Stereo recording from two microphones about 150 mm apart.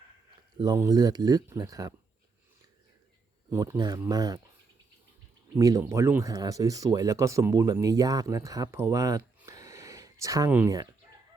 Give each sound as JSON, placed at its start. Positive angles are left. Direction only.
{"t": 0.6, "sound": "speech", "side_deg": -25}
{"t": 3.5, "sound": "speech", "side_deg": -25}
{"t": 5.5, "sound": "speech", "side_deg": -20}
{"t": 9.5, "sound": "a sound", "side_deg": -20}
{"t": 10.5, "sound": "speech", "side_deg": -15}